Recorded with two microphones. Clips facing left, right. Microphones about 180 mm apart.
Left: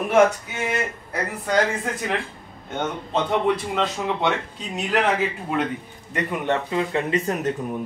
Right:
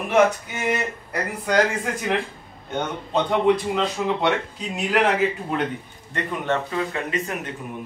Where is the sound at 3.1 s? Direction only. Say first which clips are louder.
Right 3 dB; centre (ahead or behind).